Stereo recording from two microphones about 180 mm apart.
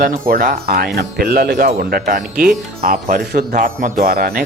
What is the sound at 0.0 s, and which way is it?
A man's voice, 50° right (ahead or behind).